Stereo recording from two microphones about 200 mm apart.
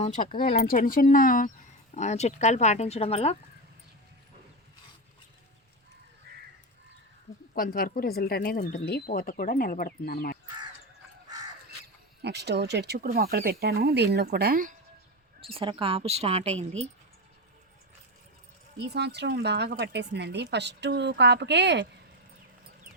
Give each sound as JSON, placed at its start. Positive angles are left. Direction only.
{"t": 0.0, "sound": "speech", "side_deg": 40}
{"t": 6.3, "sound": "crow", "side_deg": -50}
{"t": 7.5, "sound": "speech", "side_deg": 45}
{"t": 12.2, "sound": "a woman's voice", "side_deg": -55}
{"t": 15.4, "sound": "speech", "side_deg": -25}
{"t": 18.8, "sound": "a woman's voice", "side_deg": -55}